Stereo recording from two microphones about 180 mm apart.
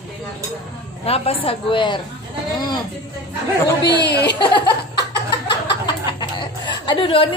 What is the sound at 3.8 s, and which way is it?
Speech, 70° left (ahead or behind).